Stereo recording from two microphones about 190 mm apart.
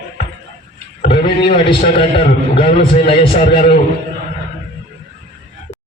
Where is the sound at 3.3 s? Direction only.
55° left (ahead or behind).